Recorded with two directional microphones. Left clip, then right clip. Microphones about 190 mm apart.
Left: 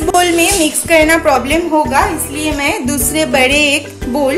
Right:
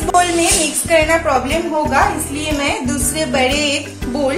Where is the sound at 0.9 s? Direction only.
50° left (ahead or behind).